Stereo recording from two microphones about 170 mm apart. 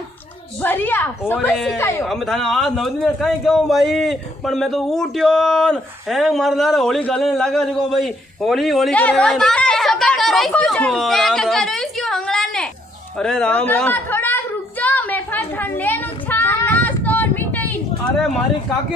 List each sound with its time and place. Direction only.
0.6 s a woman's voice: 10° left (ahead or behind)
2.0 s a man's voice: centre (ahead or behind)
13.2 s a sound: 5° left (ahead or behind)